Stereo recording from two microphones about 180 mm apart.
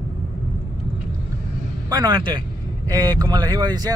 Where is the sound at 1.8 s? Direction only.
20° right (ahead or behind).